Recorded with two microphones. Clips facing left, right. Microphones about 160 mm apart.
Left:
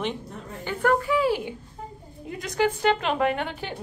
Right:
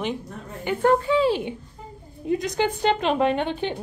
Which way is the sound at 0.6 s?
25° right (ahead or behind).